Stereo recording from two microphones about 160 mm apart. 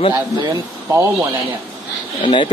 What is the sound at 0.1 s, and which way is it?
Speech, 20° right (ahead or behind).